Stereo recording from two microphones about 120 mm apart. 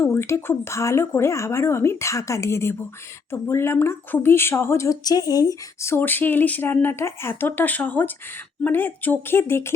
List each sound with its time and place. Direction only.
0.0 s speech: 20° left (ahead or behind)